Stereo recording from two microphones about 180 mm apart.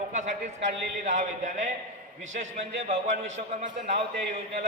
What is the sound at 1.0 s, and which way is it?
Speech, 45° right (ahead or behind).